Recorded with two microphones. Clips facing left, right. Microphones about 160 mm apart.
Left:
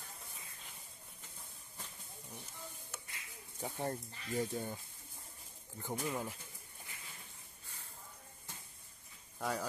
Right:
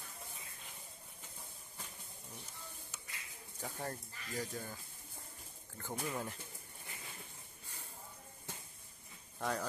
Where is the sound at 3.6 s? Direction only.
25° left (ahead or behind).